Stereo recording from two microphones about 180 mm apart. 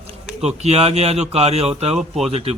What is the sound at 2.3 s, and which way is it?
Speech, 30° right (ahead or behind).